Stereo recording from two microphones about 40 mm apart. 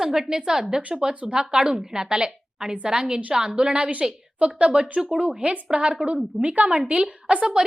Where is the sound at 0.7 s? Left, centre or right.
Right.